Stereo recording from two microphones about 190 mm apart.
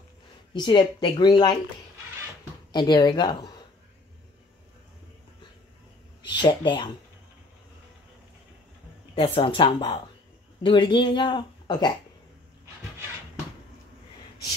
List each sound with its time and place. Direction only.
0.5 s speech: 25° left (ahead or behind)
2.7 s speech: 20° left (ahead or behind)
6.2 s speech: 25° left (ahead or behind)
9.1 s speech: 30° left (ahead or behind)